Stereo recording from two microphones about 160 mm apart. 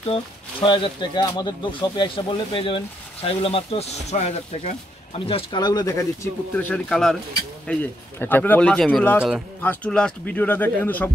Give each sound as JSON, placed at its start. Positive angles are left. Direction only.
{"t": 0.1, "sound": "speech", "side_deg": 30}
{"t": 5.2, "sound": "speech", "side_deg": 30}
{"t": 6.5, "sound": "a man's voice", "side_deg": 5}